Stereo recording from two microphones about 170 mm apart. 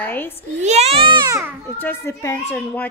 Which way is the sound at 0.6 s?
40° right (ahead or behind).